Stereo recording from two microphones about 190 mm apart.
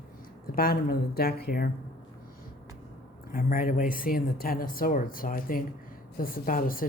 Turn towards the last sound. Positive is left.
turn(degrees=50)  # may be behind; listen again after turning